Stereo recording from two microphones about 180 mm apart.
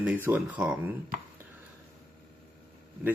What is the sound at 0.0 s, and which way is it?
Speech, 10° right (ahead or behind).